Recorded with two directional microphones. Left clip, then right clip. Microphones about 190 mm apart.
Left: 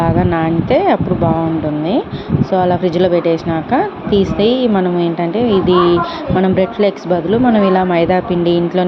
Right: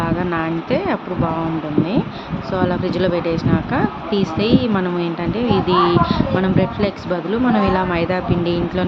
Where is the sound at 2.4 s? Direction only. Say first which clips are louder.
Left 6 dB; 15° left (ahead or behind).